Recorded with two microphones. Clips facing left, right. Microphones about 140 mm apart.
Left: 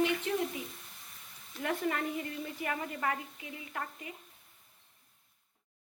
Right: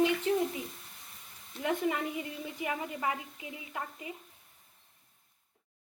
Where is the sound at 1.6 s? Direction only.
10° right (ahead or behind).